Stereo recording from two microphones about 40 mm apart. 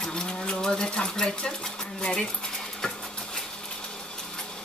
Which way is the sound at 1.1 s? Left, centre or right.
Centre.